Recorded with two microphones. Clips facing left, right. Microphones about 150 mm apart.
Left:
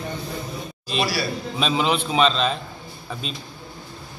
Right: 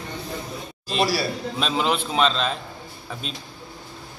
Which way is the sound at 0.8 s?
40° right (ahead or behind).